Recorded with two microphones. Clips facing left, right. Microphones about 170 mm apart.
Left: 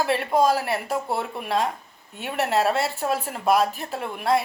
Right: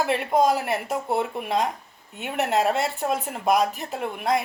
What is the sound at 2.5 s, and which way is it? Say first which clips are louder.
Speech: even; 15° right (ahead or behind).